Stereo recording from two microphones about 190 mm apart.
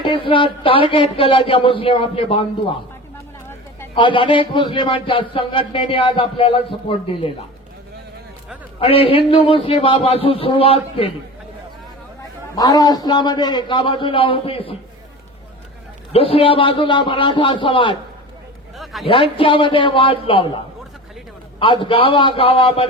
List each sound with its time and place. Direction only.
0.0 s a man's voice: 25° left (ahead or behind)
3.9 s a man's voice: 25° left (ahead or behind)
8.8 s a man's voice: 30° left (ahead or behind)
12.2 s a man's voice: 20° left (ahead or behind)
16.1 s a man's voice: 30° left (ahead or behind)
19.0 s a man's voice: 30° left (ahead or behind)
21.6 s a man's voice: 30° left (ahead or behind)